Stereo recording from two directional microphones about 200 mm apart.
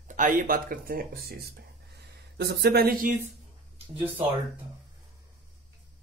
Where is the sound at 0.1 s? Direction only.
40° right (ahead or behind).